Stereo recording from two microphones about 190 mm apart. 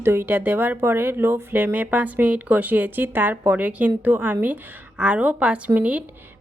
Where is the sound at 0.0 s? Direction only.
10° right (ahead or behind).